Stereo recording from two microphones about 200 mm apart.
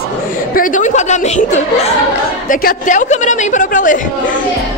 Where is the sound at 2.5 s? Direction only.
45° left (ahead or behind).